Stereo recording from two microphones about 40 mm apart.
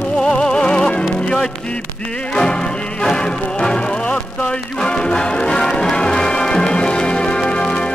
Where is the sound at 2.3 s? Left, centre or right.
Centre.